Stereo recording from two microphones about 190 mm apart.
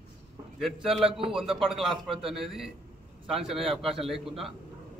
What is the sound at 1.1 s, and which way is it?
Speech, 30° right (ahead or behind).